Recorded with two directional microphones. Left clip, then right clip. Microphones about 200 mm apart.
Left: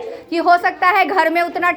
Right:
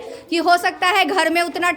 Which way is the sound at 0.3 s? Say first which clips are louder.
Left 2 dB; 30° right (ahead or behind).